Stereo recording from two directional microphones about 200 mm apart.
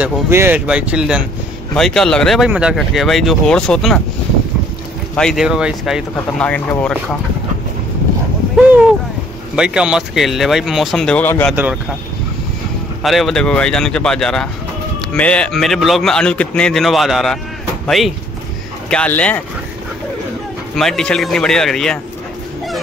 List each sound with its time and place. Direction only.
0.0 s speech: 10° right (ahead or behind)
5.1 s speech: centre (ahead or behind)
9.6 s speech: 5° right (ahead or behind)
11.5 s speech: 10° right (ahead or behind)
13.0 s speech: centre (ahead or behind)
20.7 s speech: centre (ahead or behind)